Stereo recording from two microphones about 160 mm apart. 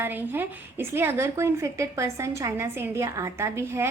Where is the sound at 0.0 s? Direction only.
10° right (ahead or behind).